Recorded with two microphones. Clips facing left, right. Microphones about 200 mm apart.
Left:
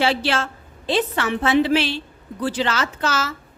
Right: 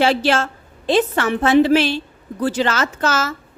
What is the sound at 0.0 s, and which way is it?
A woman's voice, 45° right (ahead or behind).